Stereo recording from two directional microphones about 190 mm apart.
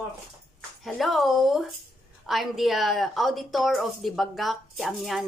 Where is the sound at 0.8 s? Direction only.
Centre (ahead or behind).